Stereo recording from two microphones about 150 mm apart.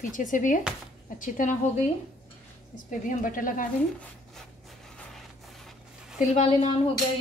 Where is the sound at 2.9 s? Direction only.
60° left (ahead or behind).